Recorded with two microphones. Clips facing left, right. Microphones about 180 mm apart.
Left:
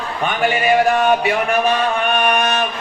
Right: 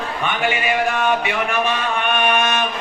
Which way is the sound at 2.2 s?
40° left (ahead or behind).